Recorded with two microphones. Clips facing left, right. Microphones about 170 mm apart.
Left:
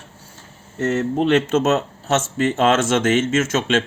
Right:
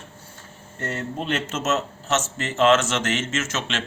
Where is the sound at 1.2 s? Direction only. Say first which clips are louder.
Left 11 dB; 65° left (ahead or behind).